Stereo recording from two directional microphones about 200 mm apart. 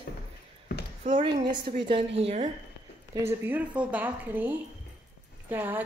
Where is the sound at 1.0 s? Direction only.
25° right (ahead or behind).